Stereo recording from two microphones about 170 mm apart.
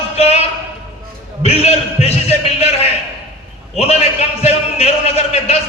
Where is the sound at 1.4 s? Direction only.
40° left (ahead or behind).